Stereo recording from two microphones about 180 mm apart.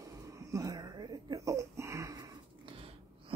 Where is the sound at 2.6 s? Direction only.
30° right (ahead or behind).